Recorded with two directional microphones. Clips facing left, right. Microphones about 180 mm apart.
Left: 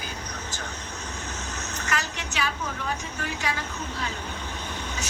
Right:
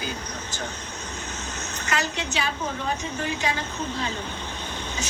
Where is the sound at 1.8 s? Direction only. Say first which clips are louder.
Right 5 dB; 25° right (ahead or behind).